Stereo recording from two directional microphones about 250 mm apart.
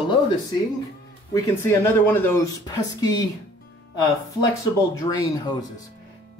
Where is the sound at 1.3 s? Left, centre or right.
Centre.